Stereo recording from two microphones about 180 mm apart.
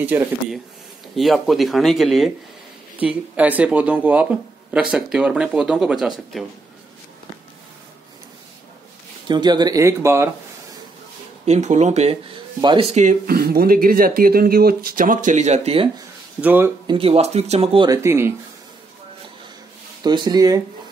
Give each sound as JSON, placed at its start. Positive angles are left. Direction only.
{"t": 0.0, "sound": "speech", "side_deg": -10}
{"t": 9.3, "sound": "speech", "side_deg": -25}
{"t": 11.4, "sound": "speech", "side_deg": -40}
{"t": 12.5, "sound": "speech", "side_deg": -25}
{"t": 12.9, "sound": "speech", "side_deg": -45}
{"t": 16.3, "sound": "speech", "side_deg": -10}
{"t": 16.8, "sound": "speech", "side_deg": -30}
{"t": 17.8, "sound": "speech", "side_deg": -15}
{"t": 20.0, "sound": "speech", "side_deg": -20}